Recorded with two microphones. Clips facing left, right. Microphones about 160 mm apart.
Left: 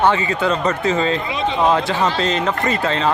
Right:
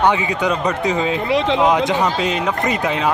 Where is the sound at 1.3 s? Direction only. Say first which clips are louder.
Right 5 dB; 90° right.